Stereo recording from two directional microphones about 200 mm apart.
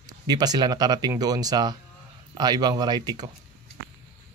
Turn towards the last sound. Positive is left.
turn(degrees=-20)  # may be behind; listen again after turning